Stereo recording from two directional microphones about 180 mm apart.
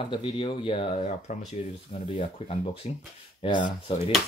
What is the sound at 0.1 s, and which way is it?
Speech, 25° left (ahead or behind).